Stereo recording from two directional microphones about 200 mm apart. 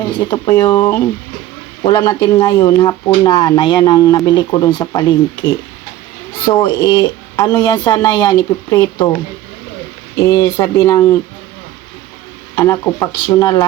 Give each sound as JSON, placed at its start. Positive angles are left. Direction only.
{"t": 0.3, "sound": "speech", "side_deg": 15}
{"t": 10.2, "sound": "speech", "side_deg": 15}
{"t": 12.5, "sound": "speech", "side_deg": 15}